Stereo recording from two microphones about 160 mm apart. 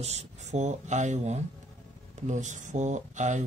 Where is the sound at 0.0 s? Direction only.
40° right (ahead or behind).